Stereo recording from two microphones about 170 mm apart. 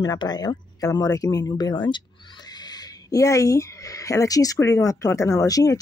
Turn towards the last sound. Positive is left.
turn(degrees=20)  # may be behind; listen again after turning